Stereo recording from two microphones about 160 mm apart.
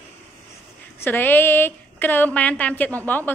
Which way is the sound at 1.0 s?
15° left (ahead or behind).